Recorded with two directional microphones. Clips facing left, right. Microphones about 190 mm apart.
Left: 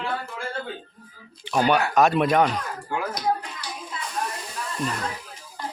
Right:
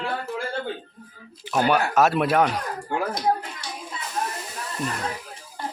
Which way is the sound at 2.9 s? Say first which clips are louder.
Right 2 dB; 25° right (ahead or behind).